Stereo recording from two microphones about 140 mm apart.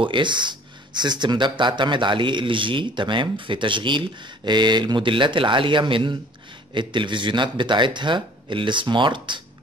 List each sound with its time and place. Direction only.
0.0 s speech: 35° right (ahead or behind)